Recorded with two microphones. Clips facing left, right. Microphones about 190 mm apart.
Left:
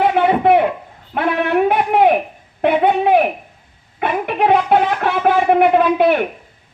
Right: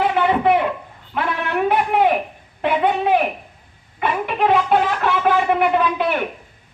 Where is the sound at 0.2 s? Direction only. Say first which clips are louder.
Left 3 dB; 50° left (ahead or behind).